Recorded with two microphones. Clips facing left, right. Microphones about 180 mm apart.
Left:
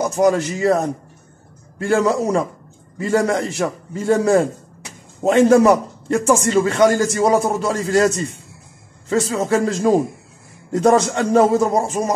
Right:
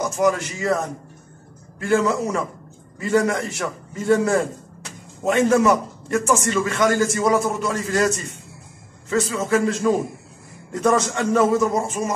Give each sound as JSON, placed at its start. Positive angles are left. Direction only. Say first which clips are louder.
{"t": 0.1, "sound": "a man's voice", "louder": "left 4 dB", "side_deg": 30}
{"t": 1.8, "sound": "a man's voice", "louder": "left 3 dB", "side_deg": 35}
{"t": 9.1, "sound": "a man's voice", "louder": "left 2 dB", "side_deg": 30}